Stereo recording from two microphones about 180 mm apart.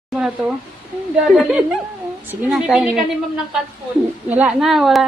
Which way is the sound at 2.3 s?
5° right (ahead or behind).